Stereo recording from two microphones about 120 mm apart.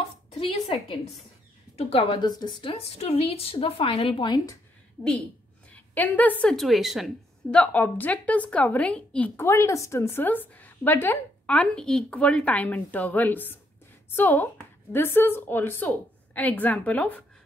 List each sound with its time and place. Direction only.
0.3 s a sound: 50° left (ahead or behind)
1.8 s a woman's voice: 55° left (ahead or behind)
5.7 s a woman's voice: 15° left (ahead or behind)
6.5 s a woman's voice: centre (ahead or behind)
7.5 s a woman's voice: 10° left (ahead or behind)
9.4 s a woman's voice: 25° left (ahead or behind)